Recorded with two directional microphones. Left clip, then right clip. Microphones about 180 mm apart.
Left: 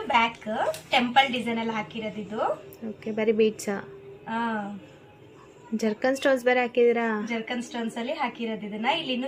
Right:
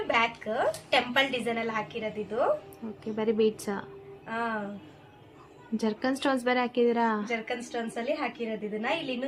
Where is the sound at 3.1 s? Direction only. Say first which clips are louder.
Left 3 dB; 10° left (ahead or behind).